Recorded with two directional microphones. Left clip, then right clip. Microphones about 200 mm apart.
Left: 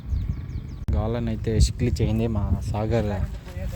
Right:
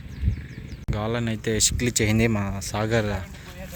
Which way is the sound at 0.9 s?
5° left (ahead or behind).